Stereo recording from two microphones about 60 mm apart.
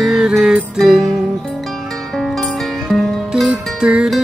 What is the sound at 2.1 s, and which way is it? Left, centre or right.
Music, centre.